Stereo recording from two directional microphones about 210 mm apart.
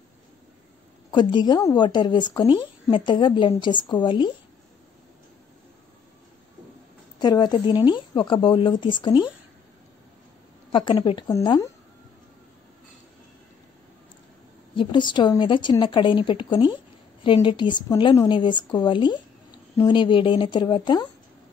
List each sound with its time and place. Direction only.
1.1 s a woman's voice: 20° left (ahead or behind)
7.2 s a woman's voice: 20° left (ahead or behind)
10.7 s a woman's voice: 20° left (ahead or behind)
14.8 s a woman's voice: 20° left (ahead or behind)